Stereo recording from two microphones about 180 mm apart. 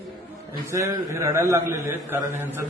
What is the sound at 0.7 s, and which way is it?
Speech, 15° right (ahead or behind).